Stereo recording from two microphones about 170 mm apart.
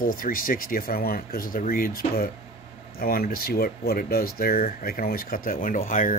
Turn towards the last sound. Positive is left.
turn(degrees=50)  # may be behind; listen again after turning